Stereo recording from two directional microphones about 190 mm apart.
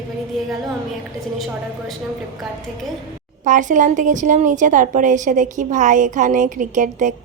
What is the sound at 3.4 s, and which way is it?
A woman's voice, 40° right (ahead or behind).